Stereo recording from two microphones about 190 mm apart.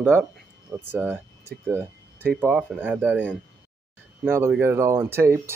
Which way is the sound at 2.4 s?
10° right (ahead or behind).